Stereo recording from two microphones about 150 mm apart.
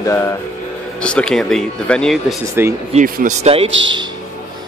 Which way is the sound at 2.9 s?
55° right (ahead or behind).